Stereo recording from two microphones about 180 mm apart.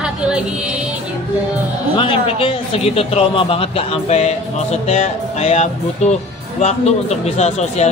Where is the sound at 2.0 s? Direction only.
30° left (ahead or behind).